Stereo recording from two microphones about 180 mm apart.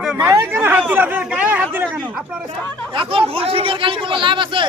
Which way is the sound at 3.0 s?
30° right (ahead or behind).